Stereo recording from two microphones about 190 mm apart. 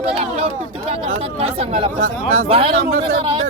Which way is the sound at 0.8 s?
30° right (ahead or behind).